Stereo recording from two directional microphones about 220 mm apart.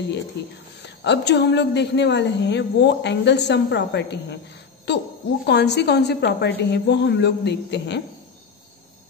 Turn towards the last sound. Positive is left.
turn(degrees=50)  # may be behind; listen again after turning